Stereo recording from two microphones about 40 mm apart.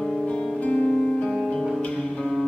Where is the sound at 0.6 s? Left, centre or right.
Left.